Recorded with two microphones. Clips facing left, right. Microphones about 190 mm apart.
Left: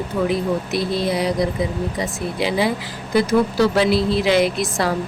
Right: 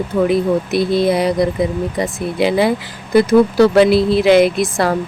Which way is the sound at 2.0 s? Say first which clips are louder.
Right 8 dB; 55° right (ahead or behind).